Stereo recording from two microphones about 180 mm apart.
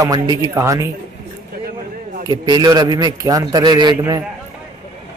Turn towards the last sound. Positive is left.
turn(degrees=-20)  # may be behind; listen again after turning